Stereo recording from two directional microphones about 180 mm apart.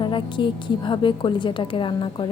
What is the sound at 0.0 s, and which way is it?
A woman's voice, 25° left (ahead or behind).